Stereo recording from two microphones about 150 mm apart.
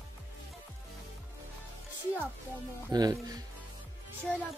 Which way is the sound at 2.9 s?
25° right (ahead or behind).